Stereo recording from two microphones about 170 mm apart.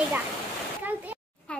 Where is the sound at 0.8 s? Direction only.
10° right (ahead or behind).